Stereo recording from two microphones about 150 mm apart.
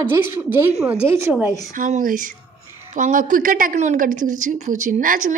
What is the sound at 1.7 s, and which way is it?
Speech, 60° right (ahead or behind).